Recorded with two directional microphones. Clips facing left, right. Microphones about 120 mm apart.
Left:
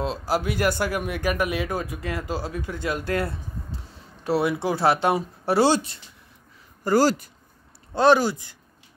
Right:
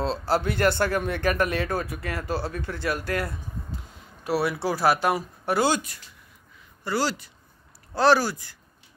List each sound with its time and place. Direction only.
0.0 s speech: 10° left (ahead or behind); by 5.9 s 30° left (ahead or behind)
6.8 s speech: 45° left (ahead or behind)
7.9 s speech: 20° left (ahead or behind)